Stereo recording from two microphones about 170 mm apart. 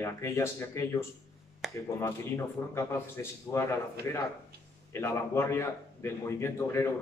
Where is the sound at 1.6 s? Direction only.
Centre (ahead or behind).